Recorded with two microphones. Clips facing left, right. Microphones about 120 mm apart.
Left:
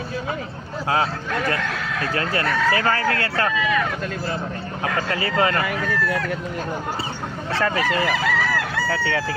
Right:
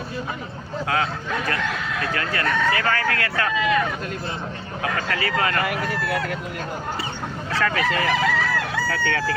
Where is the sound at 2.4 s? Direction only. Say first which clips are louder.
Right 2 dB; 5° left (ahead or behind).